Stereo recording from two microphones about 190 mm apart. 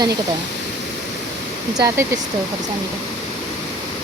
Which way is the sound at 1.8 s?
15° right (ahead or behind).